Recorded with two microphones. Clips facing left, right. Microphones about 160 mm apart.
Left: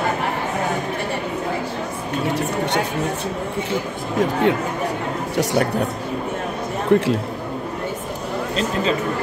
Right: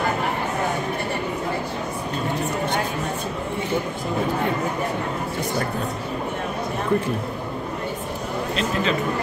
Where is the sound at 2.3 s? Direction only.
75° left (ahead or behind).